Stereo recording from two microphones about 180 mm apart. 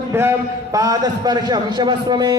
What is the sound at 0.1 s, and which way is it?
A man's voice, 15° right (ahead or behind).